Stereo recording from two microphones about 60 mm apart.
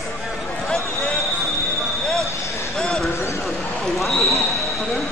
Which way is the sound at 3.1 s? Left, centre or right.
Left.